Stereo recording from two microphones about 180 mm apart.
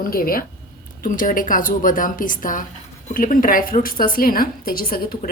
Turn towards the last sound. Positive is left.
turn(degrees=55)  # may be behind; listen again after turning